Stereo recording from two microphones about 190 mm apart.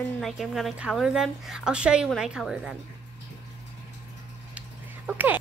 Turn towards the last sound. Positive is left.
turn(degrees=-5)  # may be behind; listen again after turning